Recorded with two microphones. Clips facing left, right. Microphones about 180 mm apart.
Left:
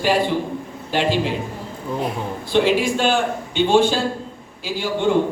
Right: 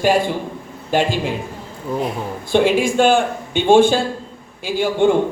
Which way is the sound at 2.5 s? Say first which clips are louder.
Right 3 dB; 50° right (ahead or behind).